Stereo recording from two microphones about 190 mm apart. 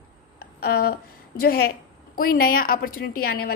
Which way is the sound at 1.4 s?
55° left (ahead or behind).